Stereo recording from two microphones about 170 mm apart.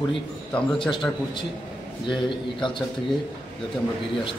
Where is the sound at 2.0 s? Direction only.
30° left (ahead or behind).